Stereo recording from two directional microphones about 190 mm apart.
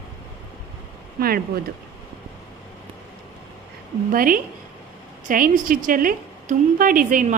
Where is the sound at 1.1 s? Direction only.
50° right (ahead or behind).